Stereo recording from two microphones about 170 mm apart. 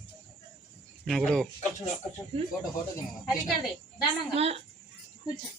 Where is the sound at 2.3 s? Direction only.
35° right (ahead or behind).